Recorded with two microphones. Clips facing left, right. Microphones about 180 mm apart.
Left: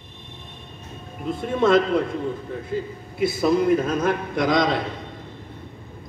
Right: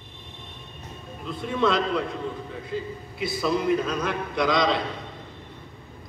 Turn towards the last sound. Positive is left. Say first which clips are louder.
# left 2 dB
turn(degrees=50)  # may be behind; listen again after turning